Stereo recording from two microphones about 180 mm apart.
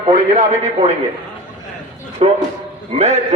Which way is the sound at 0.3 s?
35° right (ahead or behind).